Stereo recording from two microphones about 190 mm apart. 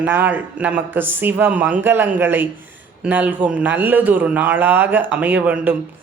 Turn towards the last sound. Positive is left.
turn(degrees=-10)  # may be behind; listen again after turning